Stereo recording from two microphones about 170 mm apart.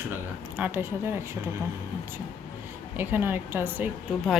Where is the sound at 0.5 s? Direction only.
10° right (ahead or behind).